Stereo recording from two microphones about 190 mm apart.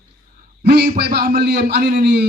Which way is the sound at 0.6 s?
60° right (ahead or behind).